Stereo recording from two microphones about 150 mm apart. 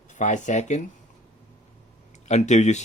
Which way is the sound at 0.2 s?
55° left (ahead or behind).